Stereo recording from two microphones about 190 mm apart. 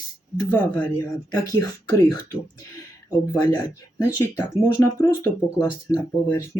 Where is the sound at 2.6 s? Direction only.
20° left (ahead or behind).